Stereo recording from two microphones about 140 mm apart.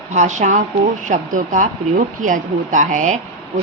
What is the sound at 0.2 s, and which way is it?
A woman's voice, 60° right (ahead or behind).